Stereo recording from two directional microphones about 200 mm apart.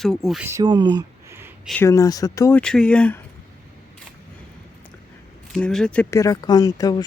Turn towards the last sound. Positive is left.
turn(degrees=20)  # may be behind; listen again after turning